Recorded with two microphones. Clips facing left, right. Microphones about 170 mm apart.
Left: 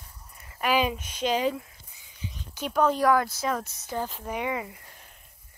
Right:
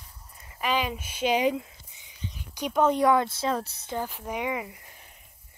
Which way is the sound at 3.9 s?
15° right (ahead or behind).